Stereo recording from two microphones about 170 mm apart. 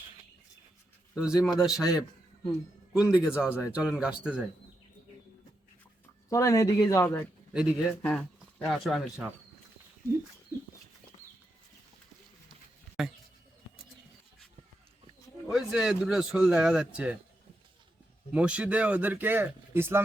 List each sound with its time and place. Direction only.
1.1 s speech: 5° right (ahead or behind)
6.3 s a man's voice: 20° left (ahead or behind)
7.5 s speech: 5° right (ahead or behind)
8.0 s speech: 10° left (ahead or behind)
15.4 s speech: centre (ahead or behind)
18.3 s speech: 5° right (ahead or behind)